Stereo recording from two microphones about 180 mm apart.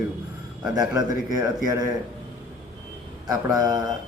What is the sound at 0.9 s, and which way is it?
Speech, 20° right (ahead or behind).